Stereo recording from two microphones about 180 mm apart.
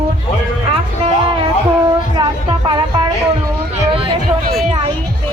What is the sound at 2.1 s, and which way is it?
Speech, 25° right (ahead or behind).